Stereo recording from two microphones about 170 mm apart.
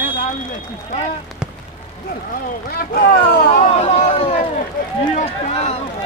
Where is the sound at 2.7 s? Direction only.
60° left (ahead or behind).